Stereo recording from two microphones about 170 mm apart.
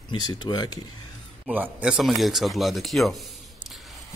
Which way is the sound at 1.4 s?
10° right (ahead or behind).